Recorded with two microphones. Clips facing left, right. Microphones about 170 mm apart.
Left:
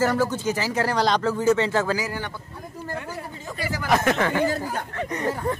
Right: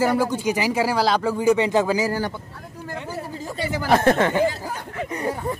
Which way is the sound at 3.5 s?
30° right (ahead or behind).